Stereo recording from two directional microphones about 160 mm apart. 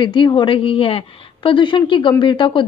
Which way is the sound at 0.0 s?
30° left (ahead or behind).